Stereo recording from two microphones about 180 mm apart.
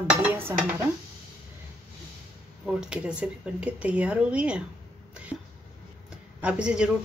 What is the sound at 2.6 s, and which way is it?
Speech, 5° right (ahead or behind).